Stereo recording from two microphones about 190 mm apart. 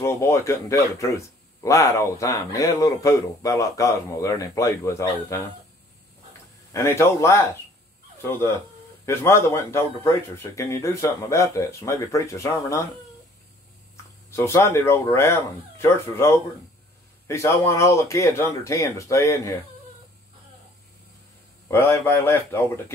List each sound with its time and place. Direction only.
0.0 s a man's voice: 15° left (ahead or behind)
6.7 s a man's voice: 15° left (ahead or behind)
14.3 s a man's voice: 15° left (ahead or behind)
21.6 s a man's voice: 15° left (ahead or behind)